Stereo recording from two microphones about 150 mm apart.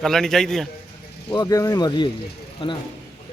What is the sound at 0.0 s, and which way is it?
Speech, 5° left (ahead or behind).